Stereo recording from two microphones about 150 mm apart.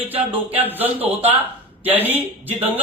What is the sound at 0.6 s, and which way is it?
A man's voice, 10° right (ahead or behind).